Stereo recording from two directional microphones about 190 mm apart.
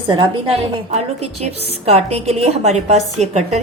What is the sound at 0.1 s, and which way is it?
Speech, 25° right (ahead or behind).